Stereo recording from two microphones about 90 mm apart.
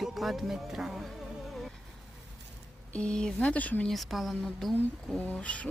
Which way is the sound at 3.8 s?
Centre (ahead or behind).